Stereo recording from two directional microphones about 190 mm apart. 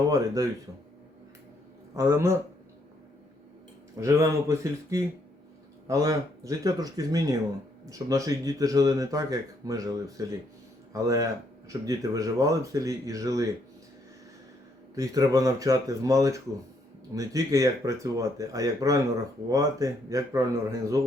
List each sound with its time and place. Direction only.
1.9 s a man's voice: 15° right (ahead or behind)
3.9 s speech: 15° right (ahead or behind)
14.9 s speech: 20° right (ahead or behind)